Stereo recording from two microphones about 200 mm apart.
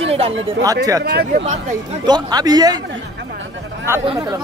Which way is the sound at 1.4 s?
35° right (ahead or behind).